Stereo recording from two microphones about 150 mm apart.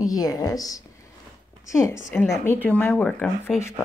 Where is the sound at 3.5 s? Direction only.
Centre (ahead or behind).